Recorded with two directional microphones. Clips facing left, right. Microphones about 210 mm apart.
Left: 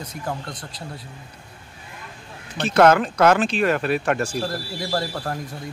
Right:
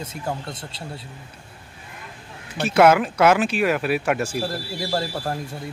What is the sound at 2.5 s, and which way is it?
Speech, 10° right (ahead or behind).